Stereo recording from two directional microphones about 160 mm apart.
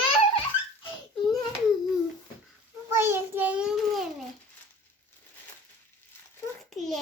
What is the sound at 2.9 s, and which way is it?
Child singing, 15° right (ahead or behind).